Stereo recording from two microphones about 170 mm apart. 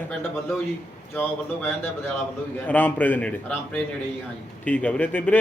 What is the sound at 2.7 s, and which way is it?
Speech, 10° left (ahead or behind).